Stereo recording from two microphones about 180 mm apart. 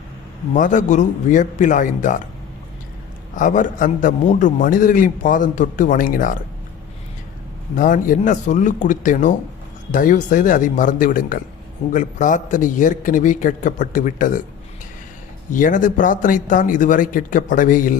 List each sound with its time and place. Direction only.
0.5 s a man's voice: 45° left (ahead or behind)
3.3 s a man's voice: 45° left (ahead or behind)
7.8 s a man's voice: 45° left (ahead or behind)
15.5 s a man's voice: 45° left (ahead or behind)